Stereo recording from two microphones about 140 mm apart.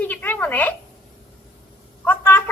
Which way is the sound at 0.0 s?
10° left (ahead or behind).